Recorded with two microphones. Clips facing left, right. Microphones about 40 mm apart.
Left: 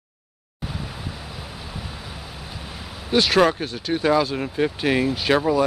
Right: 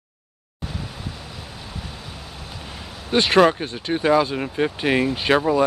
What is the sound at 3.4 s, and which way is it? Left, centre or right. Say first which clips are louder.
Speech: right 4 dB; centre.